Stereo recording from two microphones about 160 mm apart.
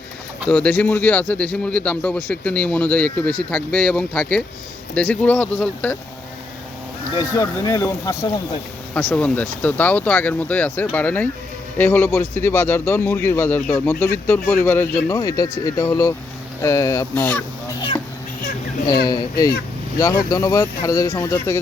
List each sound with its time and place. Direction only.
0.4 s speech: 10° left (ahead or behind)
7.2 s speech: 20° left (ahead or behind)
9.0 s speech: 5° left (ahead or behind)
19.0 s speech: 25° left (ahead or behind)